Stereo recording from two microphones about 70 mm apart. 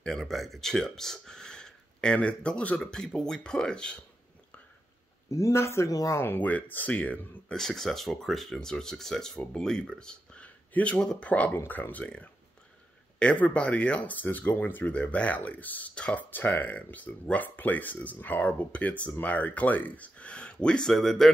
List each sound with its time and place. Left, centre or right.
0.0 s speech: centre
5.3 s speech: left
5.9 s speech: left
6.1 s speech: left
7.5 s speech: centre
11.5 s speech: left
16.3 s speech: left; by 21.3 s centre